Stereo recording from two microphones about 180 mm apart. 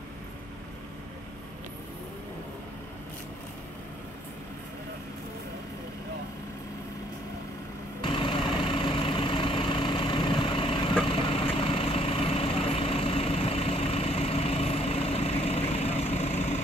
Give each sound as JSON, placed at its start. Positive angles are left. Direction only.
{"t": 8.0, "sound": "vehicle", "side_deg": 30}